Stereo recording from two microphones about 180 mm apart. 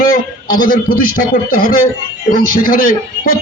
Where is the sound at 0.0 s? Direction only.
50° left (ahead or behind).